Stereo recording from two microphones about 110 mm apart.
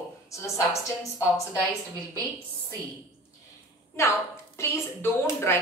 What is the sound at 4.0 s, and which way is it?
A woman's voice, 25° left (ahead or behind).